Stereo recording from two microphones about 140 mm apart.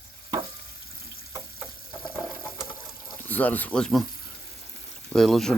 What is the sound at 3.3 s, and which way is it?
Speech, 10° left (ahead or behind).